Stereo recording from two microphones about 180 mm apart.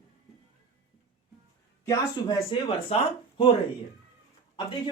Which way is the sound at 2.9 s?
35° left (ahead or behind).